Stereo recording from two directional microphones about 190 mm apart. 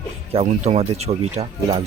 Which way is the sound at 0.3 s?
35° right (ahead or behind).